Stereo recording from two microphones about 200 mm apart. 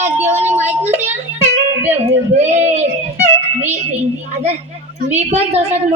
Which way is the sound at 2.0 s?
35° right (ahead or behind).